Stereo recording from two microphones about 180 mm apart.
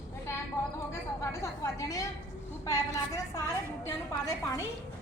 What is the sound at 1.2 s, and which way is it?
A woman's voice, 15° left (ahead or behind).